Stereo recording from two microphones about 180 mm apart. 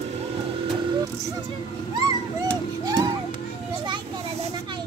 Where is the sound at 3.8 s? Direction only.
25° right (ahead or behind).